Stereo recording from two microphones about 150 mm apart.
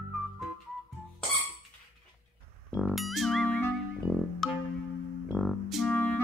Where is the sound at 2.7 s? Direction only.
Centre (ahead or behind).